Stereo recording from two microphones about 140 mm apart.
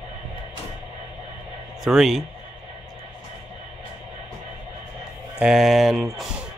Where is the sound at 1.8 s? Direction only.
Centre (ahead or behind).